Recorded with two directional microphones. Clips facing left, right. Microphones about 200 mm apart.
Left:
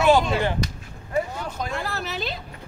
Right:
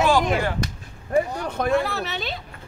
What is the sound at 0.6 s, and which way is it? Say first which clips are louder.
Speech: even; 50° right (ahead or behind).